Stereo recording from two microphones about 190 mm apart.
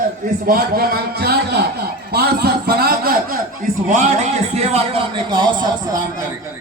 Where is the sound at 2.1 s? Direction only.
55° right (ahead or behind).